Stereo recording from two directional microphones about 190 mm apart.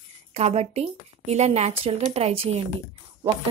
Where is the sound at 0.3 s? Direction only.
35° right (ahead or behind).